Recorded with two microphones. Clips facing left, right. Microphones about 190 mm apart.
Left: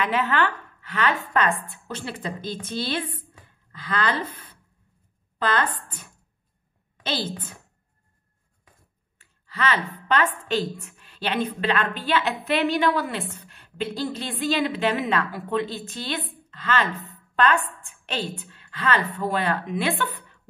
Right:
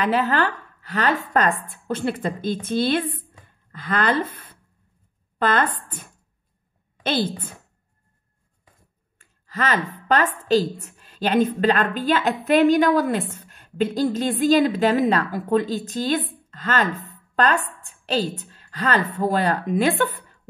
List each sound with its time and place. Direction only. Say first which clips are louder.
0.0 s a woman's voice: right 3 dB; 40° right (ahead or behind)
1.7 s a woman's voice: right 9 dB; 50° right (ahead or behind)
5.4 s a woman's voice: right 3 dB; 50° right (ahead or behind)
9.2 s a woman's voice: right 1 dB; 45° right (ahead or behind)